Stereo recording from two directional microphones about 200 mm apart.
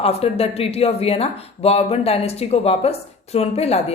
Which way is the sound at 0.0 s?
30° left (ahead or behind).